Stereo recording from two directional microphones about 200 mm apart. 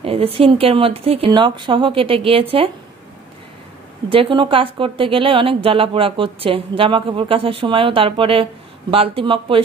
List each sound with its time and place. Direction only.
0.0 s speech: 30° right (ahead or behind)
4.1 s speech: 25° right (ahead or behind)